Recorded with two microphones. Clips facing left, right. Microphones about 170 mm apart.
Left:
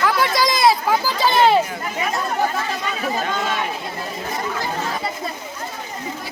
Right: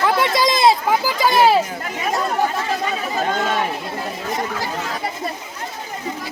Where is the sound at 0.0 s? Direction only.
25° right (ahead or behind); by 1.6 s 5° right (ahead or behind).